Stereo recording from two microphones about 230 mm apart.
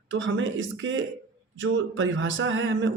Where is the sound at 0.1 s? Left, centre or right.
Right.